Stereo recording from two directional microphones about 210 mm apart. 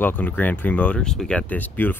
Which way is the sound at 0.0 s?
10° left (ahead or behind).